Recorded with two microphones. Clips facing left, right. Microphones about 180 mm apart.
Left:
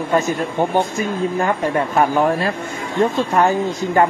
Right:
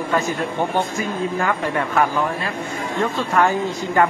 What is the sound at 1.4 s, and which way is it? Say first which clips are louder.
A man's voice: left 4 dB; 25° left (ahead or behind).